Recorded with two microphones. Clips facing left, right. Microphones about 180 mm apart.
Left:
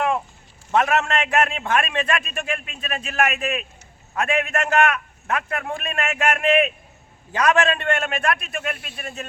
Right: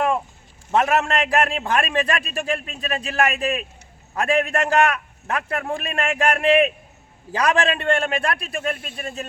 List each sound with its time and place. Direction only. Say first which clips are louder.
0.7 s a man's voice: right 1 dB; 35° right (ahead or behind)